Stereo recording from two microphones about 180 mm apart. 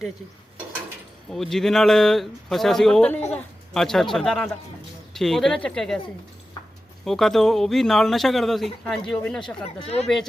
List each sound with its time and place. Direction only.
1.3 s speech: centre (ahead or behind)
7.0 s speech: centre (ahead or behind)
9.8 s speech: 35° left (ahead or behind)